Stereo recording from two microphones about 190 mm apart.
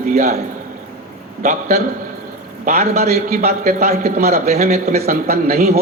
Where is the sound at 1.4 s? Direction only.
50° right (ahead or behind).